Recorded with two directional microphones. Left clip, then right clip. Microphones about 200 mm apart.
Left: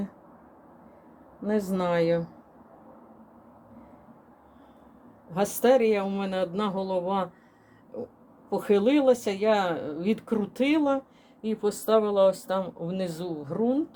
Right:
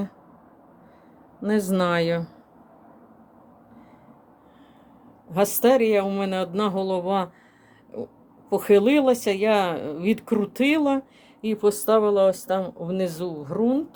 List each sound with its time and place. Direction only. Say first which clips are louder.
1.4 s speech: right 5 dB; 30° right (ahead or behind)
5.3 s speech: right 3 dB; 25° right (ahead or behind)
8.4 s speech: right 5 dB; 30° right (ahead or behind)